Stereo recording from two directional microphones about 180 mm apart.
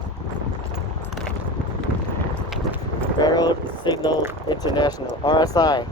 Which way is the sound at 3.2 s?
20° left (ahead or behind).